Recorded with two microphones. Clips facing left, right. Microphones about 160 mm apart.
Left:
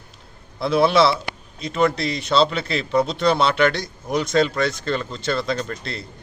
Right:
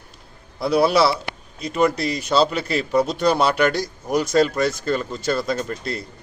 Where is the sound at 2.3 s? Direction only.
5° right (ahead or behind).